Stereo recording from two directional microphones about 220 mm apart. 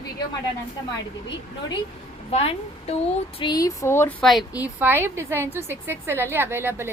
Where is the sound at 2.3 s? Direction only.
25° left (ahead or behind); by 6.8 s 10° right (ahead or behind).